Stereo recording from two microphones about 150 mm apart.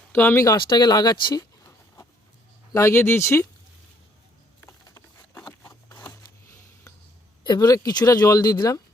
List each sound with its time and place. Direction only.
0.1 s speech: 15° left (ahead or behind)
0.5 s speech: 30° left (ahead or behind)
4.6 s patter: 10° left (ahead or behind)
5.6 s a sound: 20° left (ahead or behind)
7.4 s speech: 25° left (ahead or behind)